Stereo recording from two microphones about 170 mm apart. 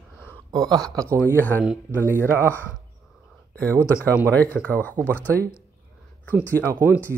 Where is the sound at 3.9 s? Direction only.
10° left (ahead or behind).